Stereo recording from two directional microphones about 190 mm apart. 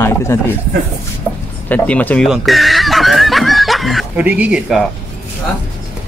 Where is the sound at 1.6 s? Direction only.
5° left (ahead or behind).